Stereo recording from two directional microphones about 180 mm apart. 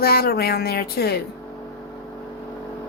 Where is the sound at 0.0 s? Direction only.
60° left (ahead or behind).